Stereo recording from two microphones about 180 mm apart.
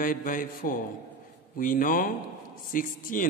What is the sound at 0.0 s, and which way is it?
A man's voice, 50° left (ahead or behind).